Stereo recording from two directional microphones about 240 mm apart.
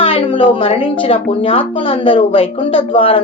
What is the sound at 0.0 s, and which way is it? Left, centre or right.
Speech, left.